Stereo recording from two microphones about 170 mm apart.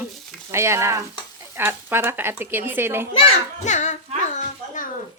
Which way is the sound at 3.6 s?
45° left (ahead or behind).